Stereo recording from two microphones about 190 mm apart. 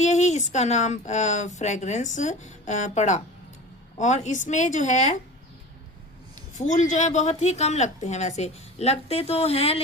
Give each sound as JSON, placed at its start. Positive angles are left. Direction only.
{"t": 0.0, "sound": "speech", "side_deg": 35}
{"t": 6.5, "sound": "speech", "side_deg": 40}